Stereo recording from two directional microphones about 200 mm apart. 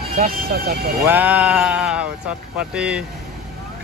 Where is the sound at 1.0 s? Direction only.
10° right (ahead or behind).